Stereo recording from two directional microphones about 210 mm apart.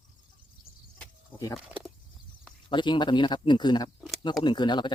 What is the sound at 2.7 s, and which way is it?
Speech, 20° left (ahead or behind).